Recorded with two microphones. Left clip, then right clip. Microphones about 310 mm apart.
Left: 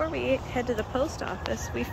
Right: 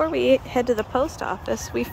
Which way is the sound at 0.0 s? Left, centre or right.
Centre.